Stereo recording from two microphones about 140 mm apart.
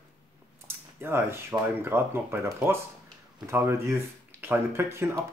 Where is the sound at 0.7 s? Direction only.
15° right (ahead or behind).